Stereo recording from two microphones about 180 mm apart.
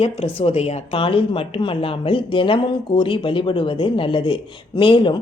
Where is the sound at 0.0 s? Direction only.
35° left (ahead or behind).